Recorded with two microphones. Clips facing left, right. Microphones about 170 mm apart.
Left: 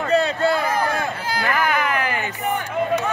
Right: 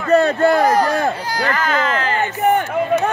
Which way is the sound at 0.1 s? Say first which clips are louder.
Right 6 dB; 50° right (ahead or behind).